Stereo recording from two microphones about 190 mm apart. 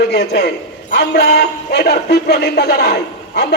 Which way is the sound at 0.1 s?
60° left (ahead or behind).